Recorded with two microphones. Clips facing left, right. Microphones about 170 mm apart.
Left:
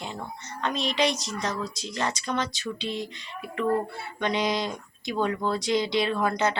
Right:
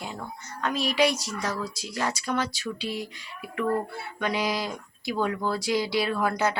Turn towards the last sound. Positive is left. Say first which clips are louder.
# even
turn(degrees=-5)  # may be behind; listen again after turning